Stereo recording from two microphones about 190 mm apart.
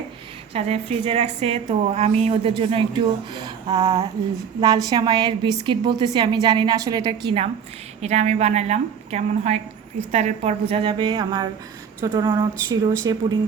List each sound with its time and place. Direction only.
0.5 s a woman's voice: 35° right (ahead or behind)